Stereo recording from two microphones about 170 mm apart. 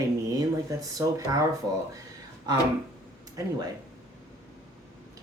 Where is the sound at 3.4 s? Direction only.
20° right (ahead or behind).